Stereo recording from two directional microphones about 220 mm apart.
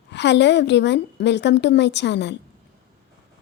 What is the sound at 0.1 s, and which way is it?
A woman's voice, 50° left (ahead or behind).